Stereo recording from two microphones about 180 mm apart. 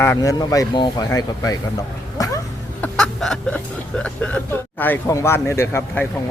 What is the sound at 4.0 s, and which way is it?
Speech, 5° left (ahead or behind).